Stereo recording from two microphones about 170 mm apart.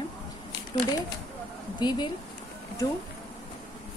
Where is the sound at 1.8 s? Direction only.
25° left (ahead or behind).